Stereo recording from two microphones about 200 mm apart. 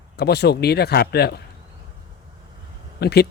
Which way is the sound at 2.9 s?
55° left (ahead or behind).